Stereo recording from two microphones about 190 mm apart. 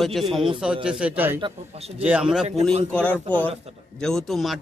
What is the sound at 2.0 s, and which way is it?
Speech, 5° right (ahead or behind).